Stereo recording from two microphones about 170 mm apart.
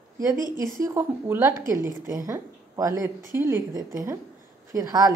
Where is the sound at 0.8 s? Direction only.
15° right (ahead or behind).